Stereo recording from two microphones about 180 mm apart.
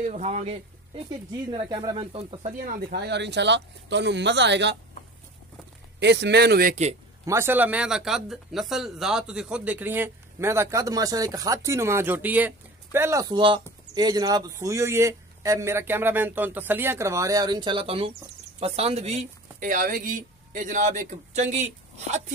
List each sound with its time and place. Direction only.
0.0 s speech: 40° right (ahead or behind)
1.3 s speech: 25° right (ahead or behind)
2.5 s speech: 65° right (ahead or behind)
5.9 s speech: 70° right (ahead or behind)
6.7 s speech: 40° right (ahead or behind)
7.2 s speech: 15° right (ahead or behind); by 22.2 s 40° right (ahead or behind)